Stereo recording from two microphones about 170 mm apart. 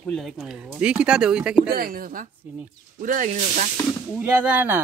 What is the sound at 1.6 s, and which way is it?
Speech, 60° right (ahead or behind).